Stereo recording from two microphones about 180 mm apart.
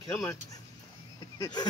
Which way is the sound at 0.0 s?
20° left (ahead or behind).